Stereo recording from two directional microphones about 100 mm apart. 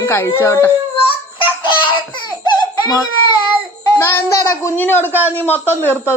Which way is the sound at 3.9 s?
25° left (ahead or behind).